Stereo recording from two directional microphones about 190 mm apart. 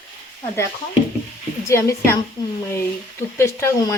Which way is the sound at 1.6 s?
15° left (ahead or behind).